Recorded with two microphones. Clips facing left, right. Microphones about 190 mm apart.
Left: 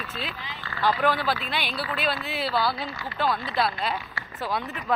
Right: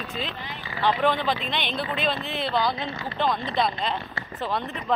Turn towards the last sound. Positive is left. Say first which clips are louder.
# right 1 dB
turn(degrees=5)  # may be behind; listen again after turning